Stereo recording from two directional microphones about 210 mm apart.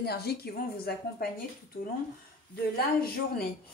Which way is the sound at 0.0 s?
50° left (ahead or behind).